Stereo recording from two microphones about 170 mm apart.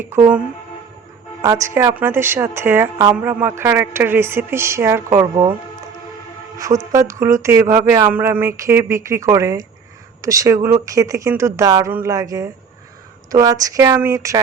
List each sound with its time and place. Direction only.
0.0 s speech: 15° right (ahead or behind)
6.9 s speech: 20° right (ahead or behind)